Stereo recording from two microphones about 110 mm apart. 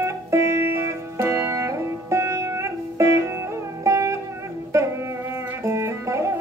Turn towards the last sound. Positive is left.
turn(degrees=-25)  # may be behind; listen again after turning